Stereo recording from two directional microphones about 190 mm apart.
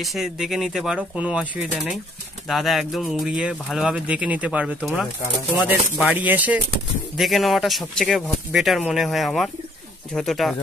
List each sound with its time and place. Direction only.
0.0 s speech: centre (ahead or behind)